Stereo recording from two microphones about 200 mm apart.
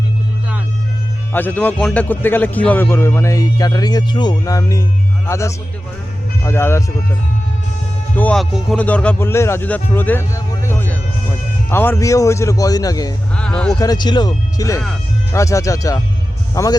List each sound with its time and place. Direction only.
1.3 s a man's voice: 10° left (ahead or behind)
8.1 s a man's voice: 5° left (ahead or behind)
13.3 s speech: 5° left (ahead or behind)
13.7 s a man's voice: 20° left (ahead or behind)